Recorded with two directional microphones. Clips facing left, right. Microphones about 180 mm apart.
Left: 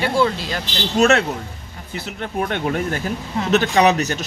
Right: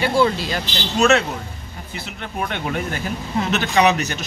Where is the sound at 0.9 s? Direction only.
50° left (ahead or behind).